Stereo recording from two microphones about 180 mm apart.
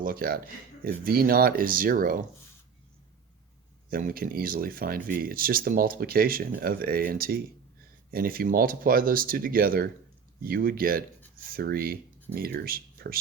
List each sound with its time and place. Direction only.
0.0 s speech: 55° right (ahead or behind)
3.8 s speech: 50° right (ahead or behind)